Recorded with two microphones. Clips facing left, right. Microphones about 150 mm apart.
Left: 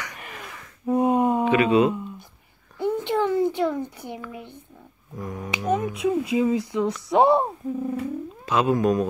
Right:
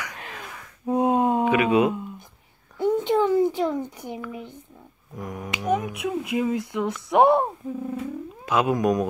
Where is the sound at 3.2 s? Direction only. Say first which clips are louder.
Left 2 dB; 20° right (ahead or behind).